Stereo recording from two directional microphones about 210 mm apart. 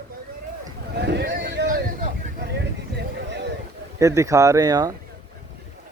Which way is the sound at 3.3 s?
55° right (ahead or behind).